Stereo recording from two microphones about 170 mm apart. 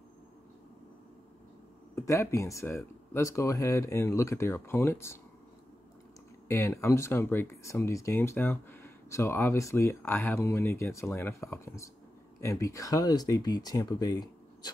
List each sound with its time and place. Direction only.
2.0 s speech: 15° left (ahead or behind)
6.4 s speech: 15° left (ahead or behind)